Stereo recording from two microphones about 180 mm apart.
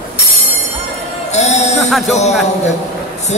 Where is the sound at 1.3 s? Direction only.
40° left (ahead or behind).